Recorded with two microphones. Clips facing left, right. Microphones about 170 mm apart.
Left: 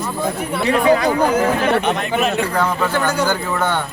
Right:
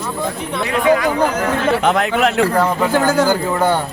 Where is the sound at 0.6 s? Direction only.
35° left (ahead or behind).